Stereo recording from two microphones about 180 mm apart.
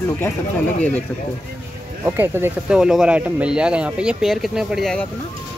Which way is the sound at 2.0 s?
10° right (ahead or behind).